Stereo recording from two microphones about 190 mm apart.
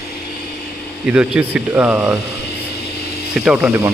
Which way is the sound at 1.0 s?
5° right (ahead or behind).